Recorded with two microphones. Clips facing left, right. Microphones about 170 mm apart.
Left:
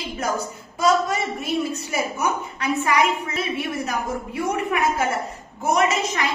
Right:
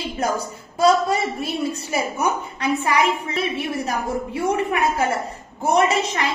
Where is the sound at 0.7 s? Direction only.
30° right (ahead or behind).